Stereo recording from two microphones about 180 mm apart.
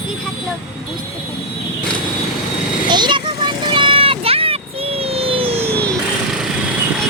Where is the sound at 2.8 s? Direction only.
25° right (ahead or behind).